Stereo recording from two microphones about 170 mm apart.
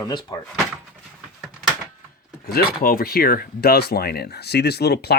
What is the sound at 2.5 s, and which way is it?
Speech, 60° left (ahead or behind).